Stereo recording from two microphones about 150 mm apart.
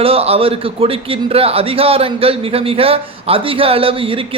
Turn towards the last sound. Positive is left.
turn(degrees=-35)  # may be behind; listen again after turning